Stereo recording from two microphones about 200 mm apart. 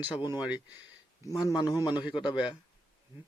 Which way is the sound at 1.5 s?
20° left (ahead or behind).